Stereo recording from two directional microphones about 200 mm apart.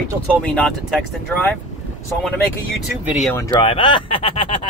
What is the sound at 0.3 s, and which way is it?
Speech, centre (ahead or behind).